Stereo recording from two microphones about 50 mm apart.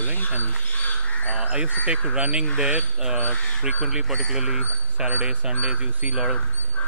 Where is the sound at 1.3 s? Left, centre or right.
Right.